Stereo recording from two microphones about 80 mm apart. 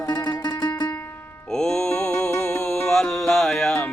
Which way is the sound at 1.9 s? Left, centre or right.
Left.